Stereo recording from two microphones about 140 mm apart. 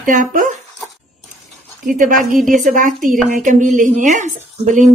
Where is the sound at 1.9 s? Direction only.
75° right (ahead or behind); by 4.9 s 55° right (ahead or behind).